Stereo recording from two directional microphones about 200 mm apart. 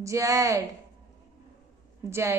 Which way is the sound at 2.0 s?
15° right (ahead or behind).